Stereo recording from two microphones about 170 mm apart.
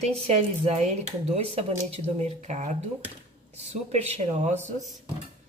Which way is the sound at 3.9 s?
40° right (ahead or behind).